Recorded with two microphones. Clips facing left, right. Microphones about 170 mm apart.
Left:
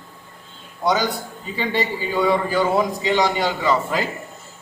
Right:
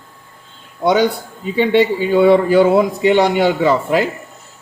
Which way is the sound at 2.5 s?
60° right (ahead or behind).